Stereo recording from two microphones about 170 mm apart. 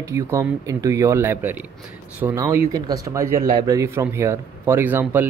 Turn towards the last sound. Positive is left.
turn(degrees=-10)  # may be behind; listen again after turning